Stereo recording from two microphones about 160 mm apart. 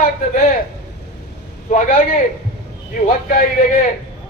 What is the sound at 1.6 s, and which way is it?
Speech, 55° left (ahead or behind).